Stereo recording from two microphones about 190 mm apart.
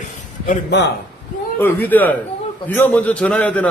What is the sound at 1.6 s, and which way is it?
A man's voice, 10° left (ahead or behind).